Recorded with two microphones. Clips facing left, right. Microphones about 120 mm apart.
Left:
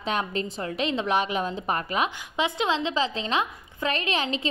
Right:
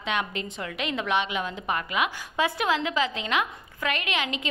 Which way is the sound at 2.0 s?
20° left (ahead or behind).